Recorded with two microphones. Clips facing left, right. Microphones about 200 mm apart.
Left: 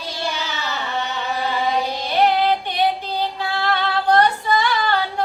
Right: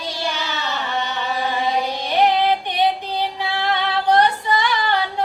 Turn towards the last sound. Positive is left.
turn(degrees=-15)  # may be behind; listen again after turning